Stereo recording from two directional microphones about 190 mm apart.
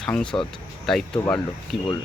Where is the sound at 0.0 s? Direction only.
5° left (ahead or behind).